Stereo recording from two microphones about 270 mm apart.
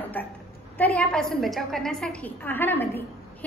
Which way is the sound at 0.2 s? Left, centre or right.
Centre.